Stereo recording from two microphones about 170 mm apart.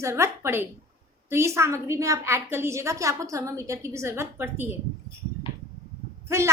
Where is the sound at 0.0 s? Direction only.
15° right (ahead or behind).